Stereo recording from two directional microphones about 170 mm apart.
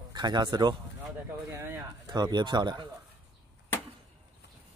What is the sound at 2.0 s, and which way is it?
Speech, 25° right (ahead or behind).